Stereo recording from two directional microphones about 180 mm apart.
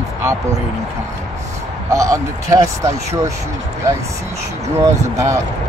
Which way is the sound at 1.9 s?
15° right (ahead or behind).